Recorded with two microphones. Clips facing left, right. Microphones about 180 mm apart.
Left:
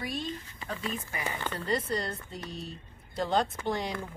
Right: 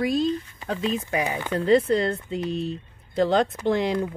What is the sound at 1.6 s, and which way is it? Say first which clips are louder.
Speech: right 13 dB; 70° right (ahead or behind).